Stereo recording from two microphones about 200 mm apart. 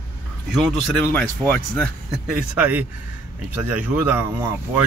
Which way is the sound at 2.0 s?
5° right (ahead or behind).